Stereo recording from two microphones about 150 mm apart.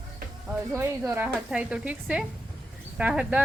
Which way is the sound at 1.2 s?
5° right (ahead or behind).